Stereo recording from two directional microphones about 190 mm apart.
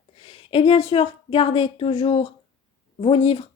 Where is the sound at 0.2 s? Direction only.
30° left (ahead or behind).